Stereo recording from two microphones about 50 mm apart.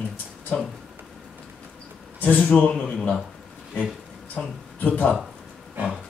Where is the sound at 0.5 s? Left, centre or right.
Left.